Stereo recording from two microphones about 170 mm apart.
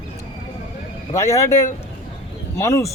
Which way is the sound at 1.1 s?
20° left (ahead or behind).